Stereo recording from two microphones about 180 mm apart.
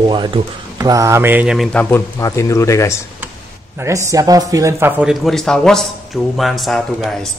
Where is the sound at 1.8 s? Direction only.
15° left (ahead or behind).